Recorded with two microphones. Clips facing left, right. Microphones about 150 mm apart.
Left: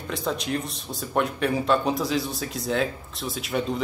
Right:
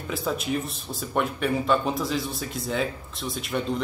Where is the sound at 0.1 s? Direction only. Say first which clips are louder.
Even; 5° right (ahead or behind).